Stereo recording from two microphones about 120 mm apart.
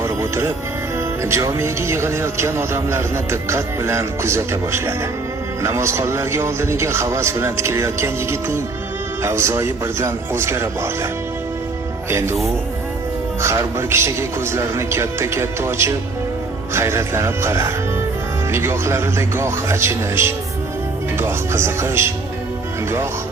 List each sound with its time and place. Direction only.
0.0 s music: 25° right (ahead or behind)
1.2 s a man's voice: 20° right (ahead or behind)
12.1 s a man's voice: 25° right (ahead or behind)
13.4 s a man's voice: 25° right (ahead or behind)